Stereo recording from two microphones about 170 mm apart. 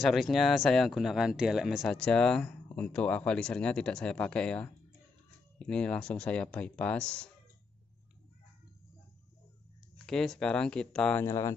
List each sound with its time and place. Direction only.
0.0 s speech: centre (ahead or behind)
10.0 s speech: centre (ahead or behind)
11.2 s speech: 15° left (ahead or behind)